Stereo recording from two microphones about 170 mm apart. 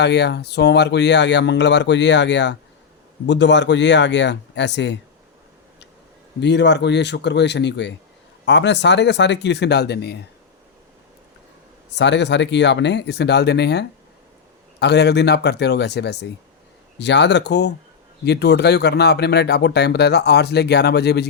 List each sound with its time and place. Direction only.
0.0 s speech: 85° left
6.4 s speech: 90° left
11.9 s speech: 90° left
17.0 s speech: 90° left